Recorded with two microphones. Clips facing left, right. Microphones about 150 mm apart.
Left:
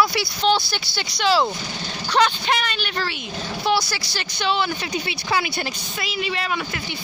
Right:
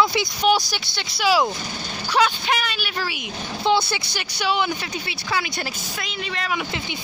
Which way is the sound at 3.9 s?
20° right (ahead or behind).